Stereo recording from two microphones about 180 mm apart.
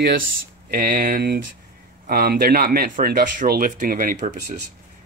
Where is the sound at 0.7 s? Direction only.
50° right (ahead or behind).